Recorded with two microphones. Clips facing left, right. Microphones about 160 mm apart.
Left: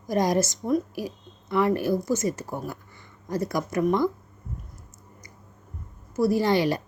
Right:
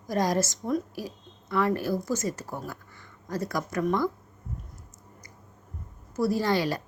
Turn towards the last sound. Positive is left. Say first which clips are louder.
# left 4 dB
turn(degrees=20)  # may be behind; listen again after turning